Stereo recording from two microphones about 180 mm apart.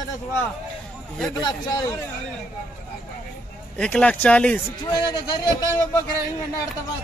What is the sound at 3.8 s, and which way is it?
Speech, 5° left (ahead or behind).